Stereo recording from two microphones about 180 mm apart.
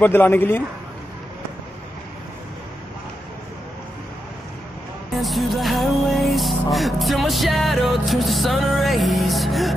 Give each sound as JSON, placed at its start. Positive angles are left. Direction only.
{"t": 0.0, "sound": "a man's voice", "side_deg": 10}
{"t": 5.2, "sound": "music", "side_deg": 0}